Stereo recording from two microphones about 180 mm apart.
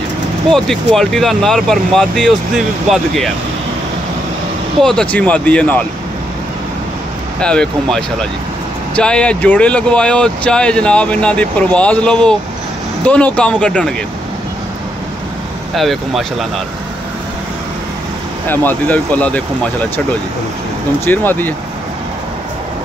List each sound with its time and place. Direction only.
0.5 s speech: centre (ahead or behind)
4.8 s speech: 5° left (ahead or behind)
7.3 s speech: 5° left (ahead or behind)
15.7 s speech: centre (ahead or behind)
18.5 s speech: 10° left (ahead or behind)
21.0 s speech: 10° left (ahead or behind)